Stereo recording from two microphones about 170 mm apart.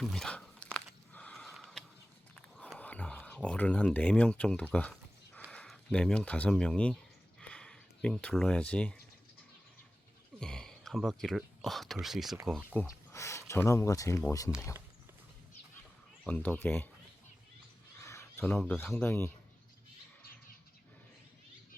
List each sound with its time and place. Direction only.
0.0 s a sound: 5° left (ahead or behind)
5.5 s speech: 5° left (ahead or behind)
7.4 s a sound: 5° left (ahead or behind)
10.4 s speech: 5° left (ahead or behind)
12.7 s speech: 10° left (ahead or behind)
16.2 s speech: 10° left (ahead or behind)
18.0 s speech: 15° left (ahead or behind)